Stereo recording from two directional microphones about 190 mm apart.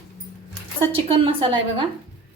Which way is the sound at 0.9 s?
25° right (ahead or behind).